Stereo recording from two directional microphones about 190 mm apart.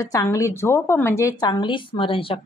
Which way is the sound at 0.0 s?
15° left (ahead or behind).